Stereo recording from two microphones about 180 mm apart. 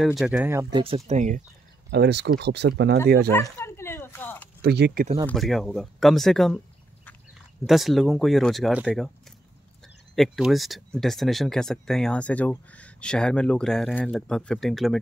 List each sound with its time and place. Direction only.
0.0 s speech: centre (ahead or behind)
0.3 s speech: 10° right (ahead or behind)
0.7 s speech: 30° right (ahead or behind)
1.9 s speech: 70° right (ahead or behind)
3.3 s a sound: 15° left (ahead or behind)
4.6 s speech: 65° right (ahead or behind)
5.2 s speech: centre (ahead or behind)
7.6 s speech: centre (ahead or behind)
10.1 s speech: centre (ahead or behind)